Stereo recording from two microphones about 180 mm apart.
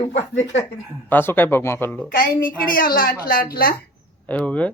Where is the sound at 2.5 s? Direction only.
50° left (ahead or behind).